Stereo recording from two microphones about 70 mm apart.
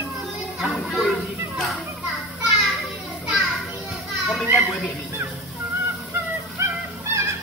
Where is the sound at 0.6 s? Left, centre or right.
Centre.